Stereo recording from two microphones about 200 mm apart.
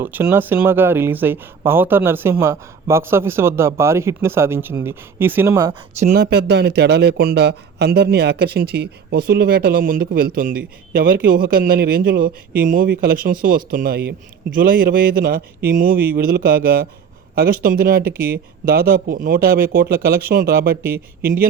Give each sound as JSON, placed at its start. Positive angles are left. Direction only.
{"t": 0.0, "sound": "speech", "side_deg": -10}
{"t": 6.1, "sound": "speech", "side_deg": -55}
{"t": 20.8, "sound": "speech", "side_deg": -10}